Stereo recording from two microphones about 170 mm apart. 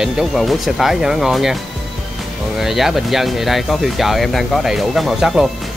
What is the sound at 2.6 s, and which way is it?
Speech, centre (ahead or behind).